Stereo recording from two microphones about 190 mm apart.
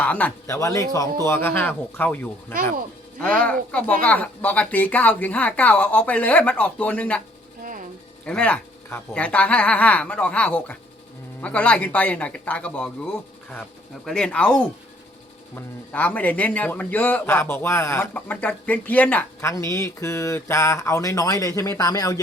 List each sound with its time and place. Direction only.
0.0 s a man's voice: 10° left (ahead or behind)
7.6 s a sound: 45° right (ahead or behind)
8.2 s a man's voice: 5° left (ahead or behind)